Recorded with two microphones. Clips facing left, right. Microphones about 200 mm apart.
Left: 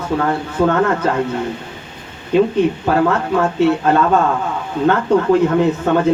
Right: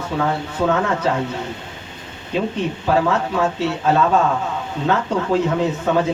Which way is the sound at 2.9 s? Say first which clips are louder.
Left 1 dB; 55° left (ahead or behind).